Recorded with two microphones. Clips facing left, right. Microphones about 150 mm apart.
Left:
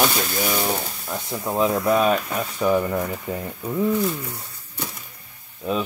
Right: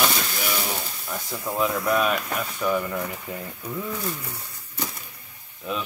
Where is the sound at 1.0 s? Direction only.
20° left (ahead or behind).